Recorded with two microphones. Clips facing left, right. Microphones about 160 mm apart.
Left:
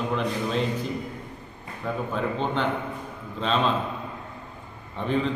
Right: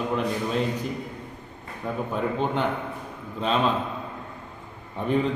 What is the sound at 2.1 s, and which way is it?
Speech, 10° right (ahead or behind).